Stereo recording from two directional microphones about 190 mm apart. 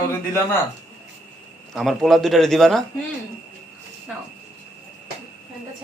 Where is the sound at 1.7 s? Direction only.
Centre (ahead or behind).